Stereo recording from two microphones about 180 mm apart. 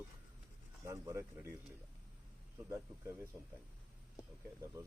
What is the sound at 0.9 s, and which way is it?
Speech, 15° right (ahead or behind).